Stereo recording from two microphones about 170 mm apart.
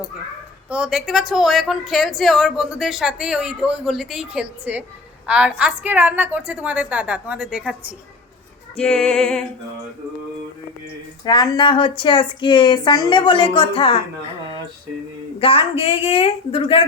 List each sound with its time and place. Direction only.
0.7 s a woman's voice: 5° right (ahead or behind)
8.7 s music: 5° left (ahead or behind)
11.3 s speech: 25° left (ahead or behind)
15.4 s a woman's voice: 35° left (ahead or behind)